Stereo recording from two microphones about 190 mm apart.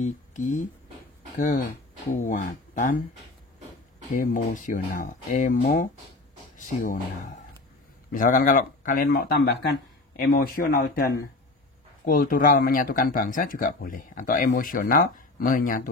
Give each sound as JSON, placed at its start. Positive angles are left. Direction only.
{"t": 0.0, "sound": "speech", "side_deg": 40}
{"t": 4.1, "sound": "speech", "side_deg": 45}
{"t": 12.1, "sound": "speech", "side_deg": 45}